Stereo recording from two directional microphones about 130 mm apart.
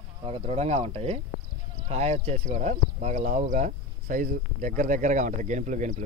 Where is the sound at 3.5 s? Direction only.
85° right.